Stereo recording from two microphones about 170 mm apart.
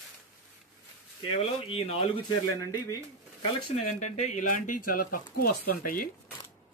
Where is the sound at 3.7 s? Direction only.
45° left (ahead or behind).